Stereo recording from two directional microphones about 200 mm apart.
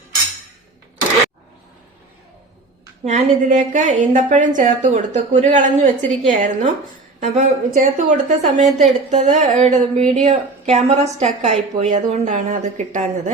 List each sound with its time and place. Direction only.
3.0 s a woman's voice: 35° right (ahead or behind)